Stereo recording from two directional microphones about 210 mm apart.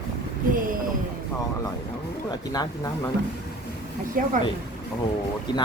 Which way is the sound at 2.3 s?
20° left (ahead or behind).